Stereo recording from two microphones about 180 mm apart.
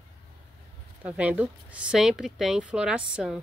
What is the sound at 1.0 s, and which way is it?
A woman's voice, 10° right (ahead or behind).